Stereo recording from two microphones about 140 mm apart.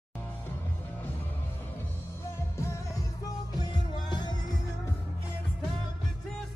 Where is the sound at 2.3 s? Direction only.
20° left (ahead or behind).